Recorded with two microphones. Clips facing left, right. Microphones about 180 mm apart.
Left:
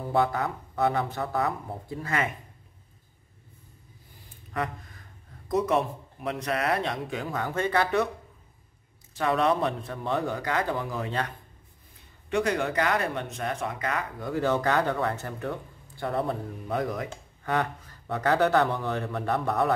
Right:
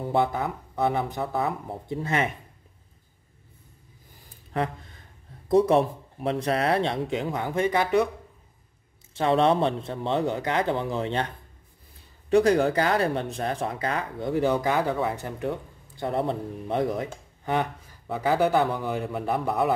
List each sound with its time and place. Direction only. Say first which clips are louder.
0.0 s a man's voice: right 1 dB; 20° right (ahead or behind)
5.5 s speech: right 5 dB; 30° right (ahead or behind); by 8.1 s 15° right (ahead or behind)
9.1 s speech: right 3 dB; 25° right (ahead or behind); by 15.2 s 5° right (ahead or behind)
15.2 s a man's voice: right 3 dB; 15° right (ahead or behind)
17.1 s a sound: right 2 dB; 15° right (ahead or behind)
18.0 s a man's voice: right 1 dB; 5° right (ahead or behind)